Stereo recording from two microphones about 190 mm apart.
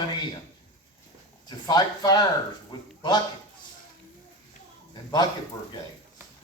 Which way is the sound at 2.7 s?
20° left (ahead or behind).